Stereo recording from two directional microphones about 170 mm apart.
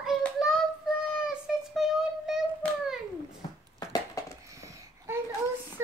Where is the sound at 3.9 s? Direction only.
20° left (ahead or behind).